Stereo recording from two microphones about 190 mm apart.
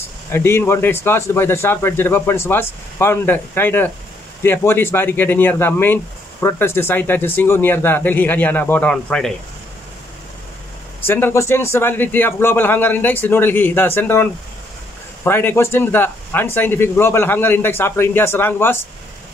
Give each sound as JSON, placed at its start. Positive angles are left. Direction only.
{"t": 0.3, "sound": "speech", "side_deg": 10}
{"t": 11.1, "sound": "speech", "side_deg": 10}
{"t": 15.2, "sound": "speech", "side_deg": 10}